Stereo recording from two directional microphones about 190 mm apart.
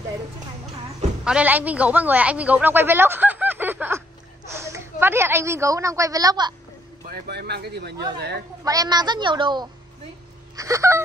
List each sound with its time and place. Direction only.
1.2 s a woman's voice: 5° right (ahead or behind)
7.1 s speech: 60° right (ahead or behind)
8.6 s a woman's voice: 20° right (ahead or behind)
10.5 s a sound: 15° right (ahead or behind)